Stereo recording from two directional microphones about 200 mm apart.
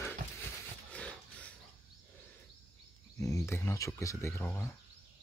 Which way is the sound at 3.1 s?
15° left (ahead or behind).